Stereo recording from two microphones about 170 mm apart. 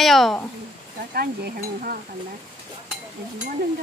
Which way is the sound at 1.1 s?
65° right (ahead or behind).